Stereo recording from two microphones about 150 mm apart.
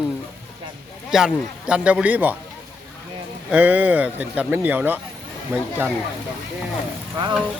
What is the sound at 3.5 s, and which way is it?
Speech, 10° right (ahead or behind).